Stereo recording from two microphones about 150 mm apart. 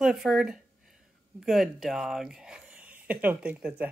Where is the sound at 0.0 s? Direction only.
5° right (ahead or behind).